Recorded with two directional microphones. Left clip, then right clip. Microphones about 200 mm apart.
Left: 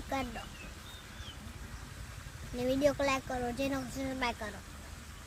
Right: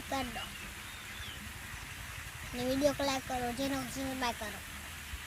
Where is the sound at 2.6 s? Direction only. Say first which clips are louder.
Left 2 dB; 25° left (ahead or behind).